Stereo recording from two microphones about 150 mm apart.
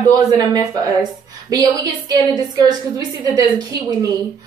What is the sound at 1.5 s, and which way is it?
A woman's voice, 25° right (ahead or behind).